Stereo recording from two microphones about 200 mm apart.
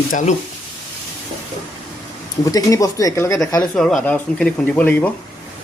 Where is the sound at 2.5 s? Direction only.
15° left (ahead or behind).